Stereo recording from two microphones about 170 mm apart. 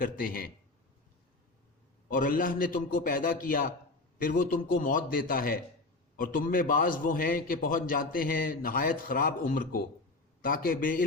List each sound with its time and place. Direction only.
0.0 s a man's voice: 55° left (ahead or behind)
2.0 s a man's voice: 55° left (ahead or behind)